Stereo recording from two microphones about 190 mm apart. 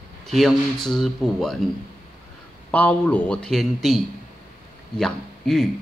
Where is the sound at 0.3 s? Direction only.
Centre (ahead or behind).